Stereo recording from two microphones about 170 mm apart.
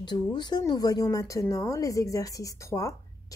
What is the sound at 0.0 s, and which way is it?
Speech, 25° left (ahead or behind).